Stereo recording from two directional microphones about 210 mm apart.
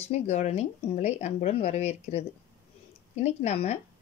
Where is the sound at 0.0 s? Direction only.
30° left (ahead or behind).